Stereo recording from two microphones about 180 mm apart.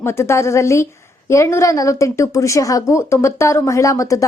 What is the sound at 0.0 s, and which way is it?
A woman's voice, 15° left (ahead or behind).